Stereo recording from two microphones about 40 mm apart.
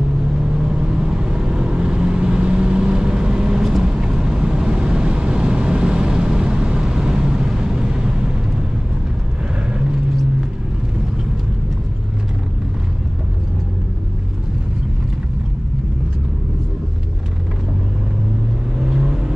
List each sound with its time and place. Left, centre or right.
0.4 s vehicle: centre
18.8 s vehicle: centre